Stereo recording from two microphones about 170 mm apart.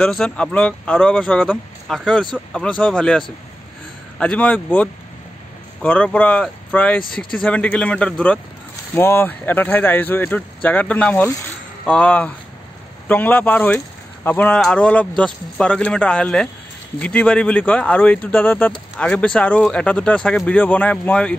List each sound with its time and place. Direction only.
0.0 s speech: 5° left (ahead or behind)